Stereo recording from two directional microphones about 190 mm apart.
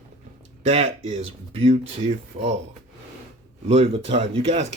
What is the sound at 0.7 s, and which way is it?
Speech, 35° right (ahead or behind).